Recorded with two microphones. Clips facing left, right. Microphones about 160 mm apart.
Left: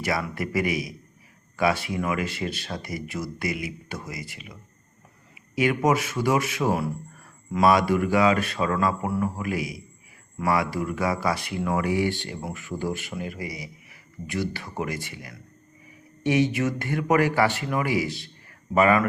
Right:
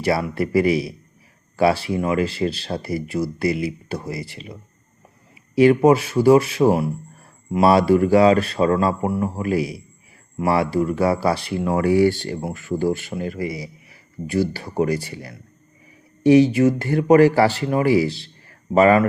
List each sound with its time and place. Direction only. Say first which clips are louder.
0.0 s a man's voice: right 7 dB; 30° right (ahead or behind)